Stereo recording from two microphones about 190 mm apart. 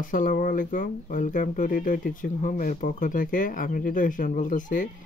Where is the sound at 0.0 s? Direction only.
45° left (ahead or behind).